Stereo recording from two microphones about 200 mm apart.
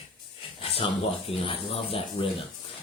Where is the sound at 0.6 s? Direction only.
30° left (ahead or behind).